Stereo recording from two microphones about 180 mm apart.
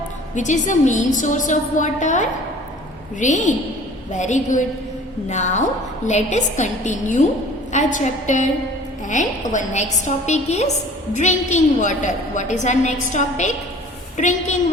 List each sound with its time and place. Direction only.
0.3 s a woman's voice: 40° left (ahead or behind)